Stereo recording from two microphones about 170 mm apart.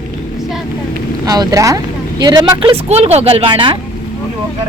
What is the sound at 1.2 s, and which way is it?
Speech, 20° right (ahead or behind).